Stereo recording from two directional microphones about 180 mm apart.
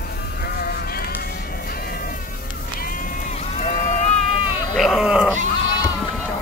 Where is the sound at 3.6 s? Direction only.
45° left (ahead or behind).